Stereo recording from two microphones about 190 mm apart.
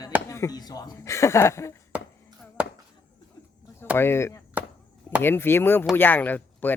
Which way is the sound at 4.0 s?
15° left (ahead or behind).